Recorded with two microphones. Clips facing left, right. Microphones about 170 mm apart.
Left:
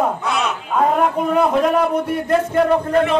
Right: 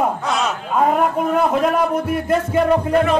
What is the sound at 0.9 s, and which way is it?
Music, centre (ahead or behind).